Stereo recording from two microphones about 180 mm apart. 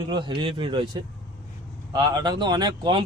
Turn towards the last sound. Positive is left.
turn(degrees=-25)  # may be behind; listen again after turning